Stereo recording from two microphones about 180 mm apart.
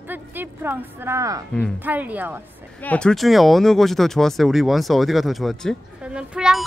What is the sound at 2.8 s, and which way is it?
Speech, 5° left (ahead or behind).